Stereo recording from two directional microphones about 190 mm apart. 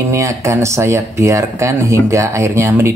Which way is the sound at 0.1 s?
15° right (ahead or behind).